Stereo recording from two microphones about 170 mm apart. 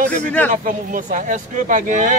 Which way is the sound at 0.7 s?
50° right (ahead or behind).